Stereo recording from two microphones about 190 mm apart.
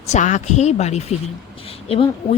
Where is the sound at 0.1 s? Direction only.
40° left (ahead or behind).